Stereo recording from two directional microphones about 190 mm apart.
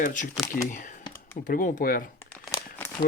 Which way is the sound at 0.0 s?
45° left (ahead or behind).